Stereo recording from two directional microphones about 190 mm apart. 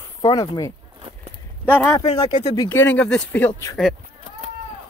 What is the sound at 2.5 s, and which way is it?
Speech, 15° left (ahead or behind).